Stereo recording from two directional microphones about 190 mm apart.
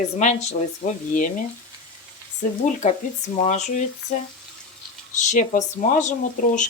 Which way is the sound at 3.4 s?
35° left (ahead or behind).